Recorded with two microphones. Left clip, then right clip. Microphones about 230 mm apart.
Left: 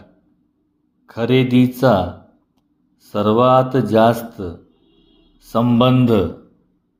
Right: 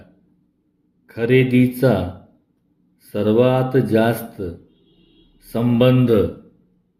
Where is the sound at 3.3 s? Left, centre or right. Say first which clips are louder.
Left 3 dB; centre.